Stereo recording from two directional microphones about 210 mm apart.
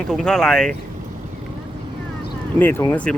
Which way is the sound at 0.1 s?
Centre (ahead or behind).